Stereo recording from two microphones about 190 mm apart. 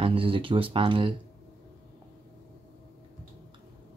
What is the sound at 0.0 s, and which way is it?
Speech, 30° right (ahead or behind).